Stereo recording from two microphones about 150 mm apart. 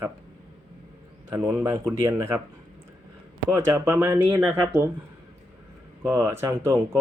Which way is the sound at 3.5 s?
15° right (ahead or behind).